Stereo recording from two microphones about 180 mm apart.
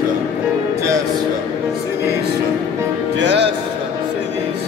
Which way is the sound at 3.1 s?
75° right (ahead or behind).